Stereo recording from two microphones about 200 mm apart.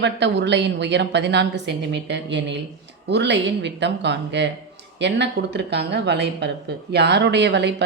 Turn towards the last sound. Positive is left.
turn(degrees=-60)  # may be behind; listen again after turning